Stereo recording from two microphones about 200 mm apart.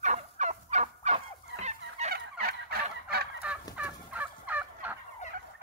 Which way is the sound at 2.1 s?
50° right (ahead or behind).